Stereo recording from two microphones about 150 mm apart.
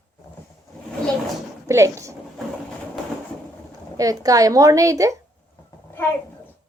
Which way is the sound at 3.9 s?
25° right (ahead or behind).